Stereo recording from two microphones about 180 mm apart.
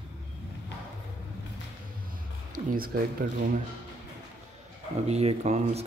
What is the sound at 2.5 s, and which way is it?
Music, 50° right (ahead or behind).